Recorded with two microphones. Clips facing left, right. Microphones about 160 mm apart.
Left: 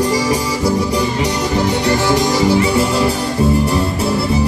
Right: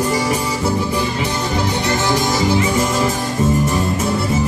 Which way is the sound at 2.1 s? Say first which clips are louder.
Left 3 dB; 40° left (ahead or behind).